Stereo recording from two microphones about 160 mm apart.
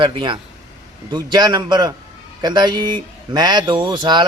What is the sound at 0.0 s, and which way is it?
Speech, 30° right (ahead or behind).